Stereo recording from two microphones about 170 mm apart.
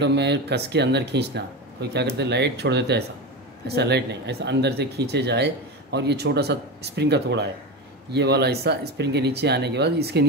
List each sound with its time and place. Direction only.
0.0 s speech: 90° right; by 10.2 s 70° right (ahead or behind)